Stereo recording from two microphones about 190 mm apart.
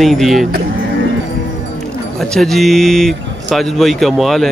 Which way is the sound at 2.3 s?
Centre (ahead or behind).